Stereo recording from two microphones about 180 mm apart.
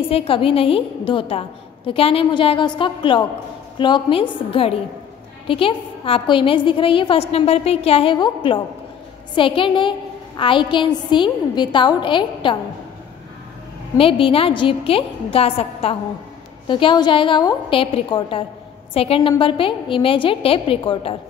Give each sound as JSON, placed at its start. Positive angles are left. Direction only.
{"t": 0.1, "sound": "a woman's voice", "side_deg": 30}
{"t": 13.9, "sound": "a woman's voice", "side_deg": 30}